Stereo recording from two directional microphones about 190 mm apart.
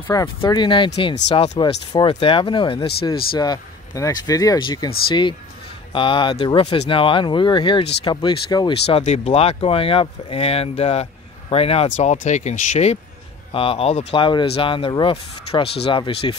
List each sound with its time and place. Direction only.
0.1 s speech: 20° left (ahead or behind)
8.8 s speech: 35° left (ahead or behind)